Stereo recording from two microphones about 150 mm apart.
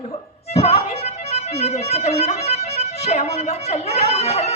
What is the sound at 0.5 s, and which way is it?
Music, 45° left (ahead or behind).